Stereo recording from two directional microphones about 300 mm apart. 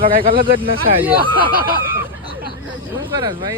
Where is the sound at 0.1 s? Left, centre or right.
Right.